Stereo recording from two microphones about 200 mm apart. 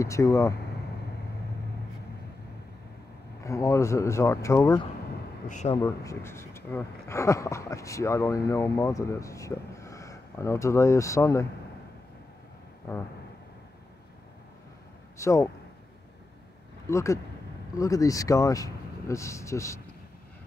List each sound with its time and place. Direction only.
0.0 s speech: 15° left (ahead or behind)
3.4 s speech: 15° left (ahead or behind)
5.5 s speech: 35° left (ahead or behind)
5.8 s speech: 15° left (ahead or behind)
15.1 s speech: 15° left (ahead or behind)
16.9 s speech: 15° left (ahead or behind)